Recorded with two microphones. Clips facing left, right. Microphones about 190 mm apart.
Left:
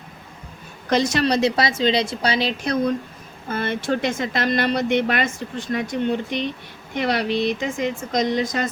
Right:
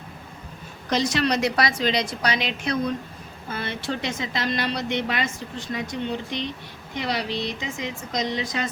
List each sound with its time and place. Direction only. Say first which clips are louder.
0.9 s a woman's voice: left 4 dB; 50° left (ahead or behind)
1.2 s a woman's voice: left 3 dB; 30° left (ahead or behind)
3.5 s a woman's voice: left 6 dB; 50° left (ahead or behind)